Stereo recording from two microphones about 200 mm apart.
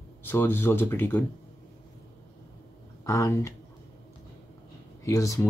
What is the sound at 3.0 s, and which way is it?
Speech, 15° left (ahead or behind).